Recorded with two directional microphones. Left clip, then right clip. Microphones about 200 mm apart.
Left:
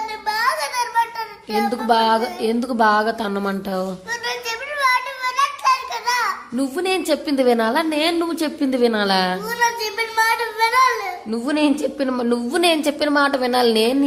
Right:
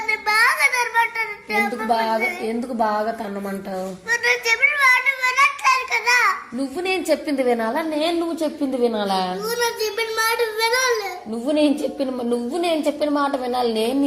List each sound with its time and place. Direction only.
0.1 s a sound: 10° left (ahead or behind)
1.9 s speech: 45° left (ahead or behind)
4.1 s a sound: 10° left (ahead or behind)
6.6 s speech: 45° left (ahead or behind)
7.1 s a woman's voice: 25° left (ahead or behind)
9.5 s a child's voice: 10° left (ahead or behind)
12.5 s a woman's voice: 30° left (ahead or behind)